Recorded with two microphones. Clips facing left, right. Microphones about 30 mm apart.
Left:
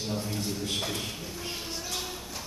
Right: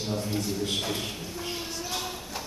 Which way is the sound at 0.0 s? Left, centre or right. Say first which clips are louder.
Right 2 dB; centre.